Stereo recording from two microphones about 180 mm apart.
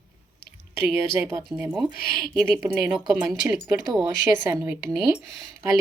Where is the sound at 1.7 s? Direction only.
Centre (ahead or behind).